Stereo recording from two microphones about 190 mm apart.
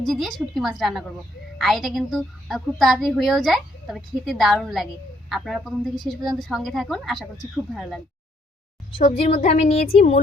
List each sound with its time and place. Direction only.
0.0 s a woman's voice: centre (ahead or behind)
9.3 s speech: 35° left (ahead or behind)